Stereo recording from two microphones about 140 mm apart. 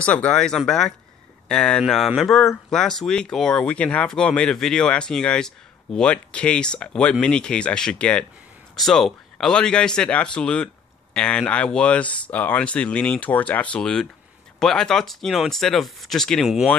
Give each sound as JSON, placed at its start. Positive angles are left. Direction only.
{"t": 0.0, "sound": "speech", "side_deg": 10}